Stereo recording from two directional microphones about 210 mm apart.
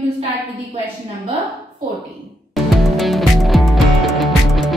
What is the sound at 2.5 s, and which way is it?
Music, centre (ahead or behind).